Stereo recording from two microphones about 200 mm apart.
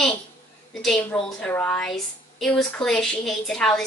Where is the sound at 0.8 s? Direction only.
5° left (ahead or behind).